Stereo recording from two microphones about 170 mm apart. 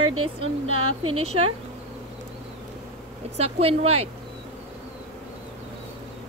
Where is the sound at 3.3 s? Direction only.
35° right (ahead or behind).